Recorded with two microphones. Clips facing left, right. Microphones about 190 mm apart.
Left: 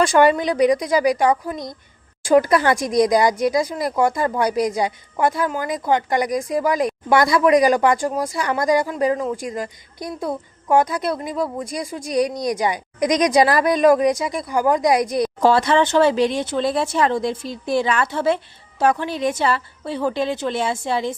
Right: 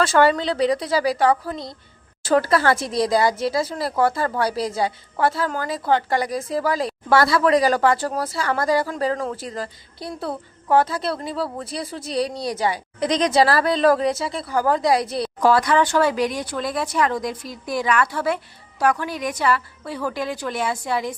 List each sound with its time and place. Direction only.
0.0 s speech: 15° left (ahead or behind)
15.4 s speech: 25° left (ahead or behind)